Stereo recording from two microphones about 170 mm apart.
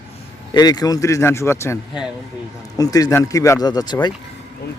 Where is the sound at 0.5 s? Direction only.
25° left (ahead or behind).